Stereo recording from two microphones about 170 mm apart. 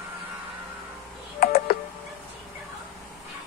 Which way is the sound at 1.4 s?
60° left (ahead or behind).